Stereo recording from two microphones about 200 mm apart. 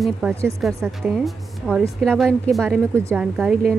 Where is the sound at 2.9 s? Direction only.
10° right (ahead or behind).